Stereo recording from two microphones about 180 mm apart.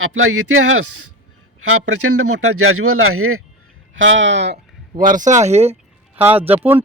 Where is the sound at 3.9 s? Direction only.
90° right.